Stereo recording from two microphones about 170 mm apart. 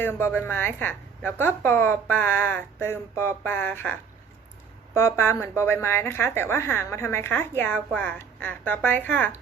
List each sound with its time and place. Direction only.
0.0 s a woman's voice: 15° left (ahead or behind)
4.9 s a woman's voice: 15° left (ahead or behind)